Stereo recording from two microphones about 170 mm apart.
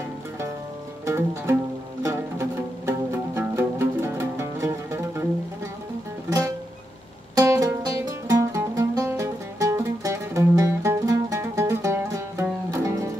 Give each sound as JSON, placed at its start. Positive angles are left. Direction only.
{"t": 1.0, "sound": "music", "side_deg": -15}
{"t": 7.3, "sound": "music", "side_deg": -20}